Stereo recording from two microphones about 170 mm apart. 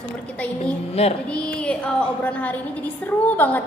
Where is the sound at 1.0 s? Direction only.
35° left (ahead or behind).